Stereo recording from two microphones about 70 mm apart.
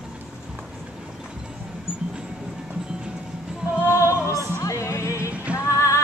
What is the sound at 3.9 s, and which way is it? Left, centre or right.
Music, left.